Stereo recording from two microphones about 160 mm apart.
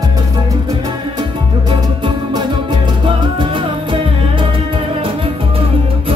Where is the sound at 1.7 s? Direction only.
30° right (ahead or behind).